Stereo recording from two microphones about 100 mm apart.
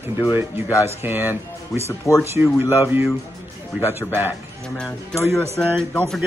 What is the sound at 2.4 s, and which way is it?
Speech, 20° right (ahead or behind).